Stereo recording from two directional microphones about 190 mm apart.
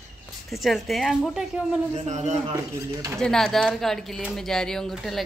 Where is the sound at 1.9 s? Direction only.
35° right (ahead or behind).